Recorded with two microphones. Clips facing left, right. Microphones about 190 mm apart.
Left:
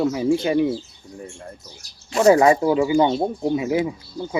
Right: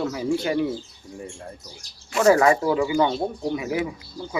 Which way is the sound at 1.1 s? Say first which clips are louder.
Even; centre (ahead or behind).